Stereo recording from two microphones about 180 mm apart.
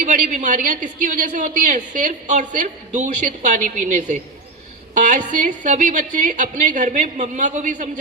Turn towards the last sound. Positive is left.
turn(degrees=-45)  # may be behind; listen again after turning